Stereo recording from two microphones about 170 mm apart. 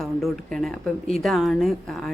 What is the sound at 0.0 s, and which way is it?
A woman's voice, centre (ahead or behind).